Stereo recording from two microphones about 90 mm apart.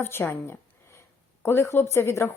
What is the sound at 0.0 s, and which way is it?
A woman's voice, 25° left (ahead or behind).